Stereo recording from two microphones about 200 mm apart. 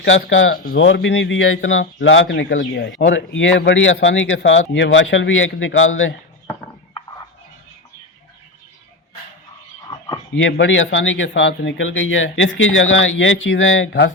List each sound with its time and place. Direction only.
0.0 s speech: 75° left (ahead or behind)
0.5 s speech: 45° left (ahead or behind)
0.9 s speech: 65° left (ahead or behind)
9.8 s a sound: 20° left (ahead or behind)
10.3 s speech: 70° left (ahead or behind)